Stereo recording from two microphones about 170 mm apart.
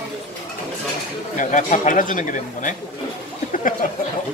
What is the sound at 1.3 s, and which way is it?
Speech, 50° left (ahead or behind).